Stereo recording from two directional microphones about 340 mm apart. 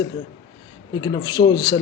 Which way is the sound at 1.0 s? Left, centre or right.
Centre.